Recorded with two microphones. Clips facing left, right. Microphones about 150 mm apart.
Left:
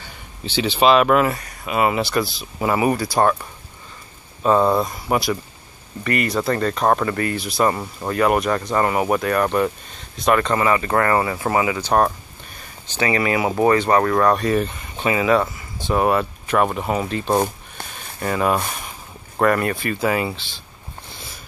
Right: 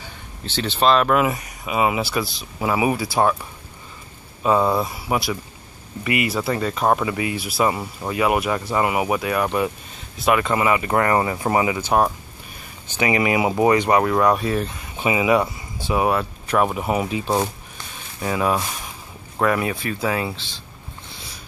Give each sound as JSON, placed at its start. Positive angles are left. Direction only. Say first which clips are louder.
{"t": 0.0, "sound": "speech", "louder": "left 1 dB", "side_deg": 0}
{"t": 1.1, "sound": "speech", "louder": "left 2 dB", "side_deg": -10}
{"t": 4.4, "sound": "speech", "louder": "left 2 dB", "side_deg": -5}
{"t": 11.8, "sound": "speech", "louder": "left 1 dB", "side_deg": -5}